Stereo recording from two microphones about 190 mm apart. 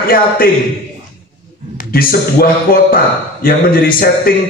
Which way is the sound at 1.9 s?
50° left (ahead or behind).